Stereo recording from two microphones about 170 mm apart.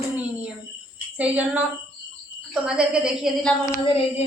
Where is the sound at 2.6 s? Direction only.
5° right (ahead or behind).